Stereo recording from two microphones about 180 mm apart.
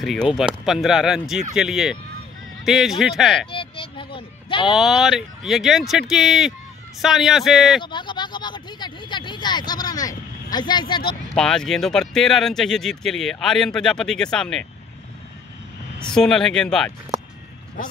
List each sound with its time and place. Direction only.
0.0 s speech: centre (ahead or behind)
3.4 s a sound: 30° left (ahead or behind)
4.7 s speech: centre (ahead or behind)
7.8 s speech: 25° left (ahead or behind)
11.3 s speech: 5° left (ahead or behind)
16.0 s speech: 5° left (ahead or behind)